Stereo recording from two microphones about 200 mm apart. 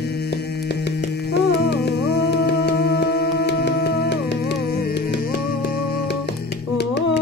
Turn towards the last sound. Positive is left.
turn(degrees=55)  # may be behind; listen again after turning